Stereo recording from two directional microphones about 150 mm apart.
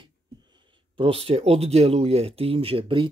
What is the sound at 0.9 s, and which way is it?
Speech, 40° right (ahead or behind).